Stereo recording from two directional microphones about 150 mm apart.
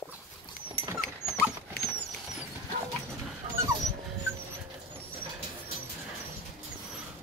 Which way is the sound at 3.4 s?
45° right (ahead or behind).